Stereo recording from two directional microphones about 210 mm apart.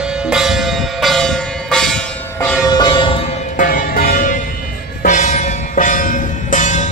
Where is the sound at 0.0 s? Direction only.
5° right (ahead or behind).